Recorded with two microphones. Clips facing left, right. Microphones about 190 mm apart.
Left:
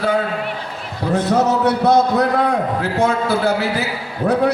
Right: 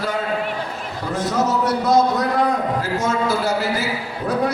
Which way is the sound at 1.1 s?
60° left (ahead or behind).